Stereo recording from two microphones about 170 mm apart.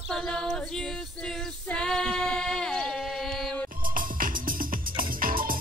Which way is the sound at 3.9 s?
55° right (ahead or behind).